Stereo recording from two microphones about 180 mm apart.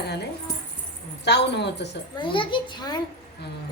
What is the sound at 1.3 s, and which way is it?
Speech, 70° left (ahead or behind).